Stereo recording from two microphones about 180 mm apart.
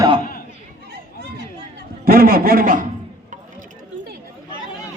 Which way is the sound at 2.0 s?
55° right (ahead or behind).